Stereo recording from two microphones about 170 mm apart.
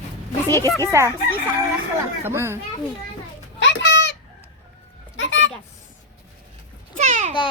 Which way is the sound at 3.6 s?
90° left.